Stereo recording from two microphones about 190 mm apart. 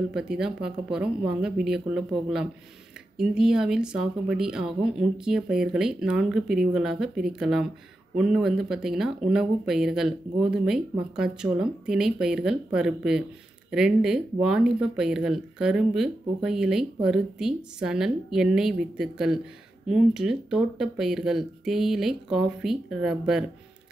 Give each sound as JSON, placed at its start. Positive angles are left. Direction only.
{"t": 0.1, "sound": "speech", "side_deg": -5}